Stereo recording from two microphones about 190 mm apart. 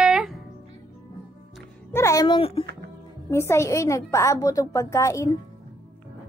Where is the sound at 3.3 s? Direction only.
15° left (ahead or behind).